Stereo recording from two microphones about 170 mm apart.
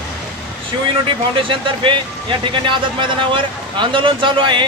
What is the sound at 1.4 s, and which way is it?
Speech, 30° right (ahead or behind).